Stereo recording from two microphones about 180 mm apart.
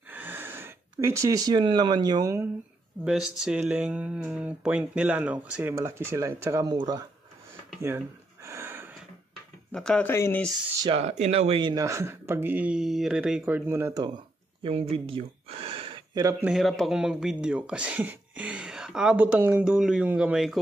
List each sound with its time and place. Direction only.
0.1 s speech: 10° right (ahead or behind)
3.1 s speech: 5° right (ahead or behind); by 7.0 s 20° right (ahead or behind)
8.5 s a sound: 15° right (ahead or behind)
9.7 s speech: 5° left (ahead or behind)
10.8 s speech: 35° right (ahead or behind); by 14.1 s 15° right (ahead or behind)
14.6 s a sound: 30° right (ahead or behind)
16.2 s speech: 15° right (ahead or behind)
16.5 s speech: centre (ahead or behind)